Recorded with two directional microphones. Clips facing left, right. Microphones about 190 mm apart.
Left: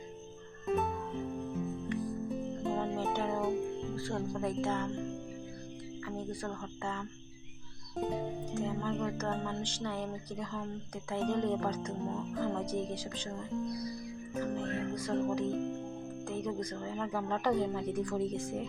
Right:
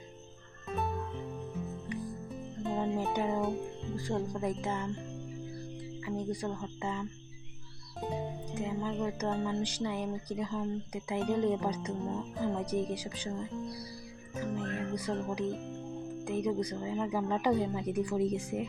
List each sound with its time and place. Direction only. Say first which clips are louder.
2.7 s music: right 4 dB; 15° right (ahead or behind)
3.9 s speech: right 1 dB; 15° right (ahead or behind)
6.1 s speech: right 4 dB; 15° right (ahead or behind)
8.5 s speech: right 1 dB; 10° right (ahead or behind)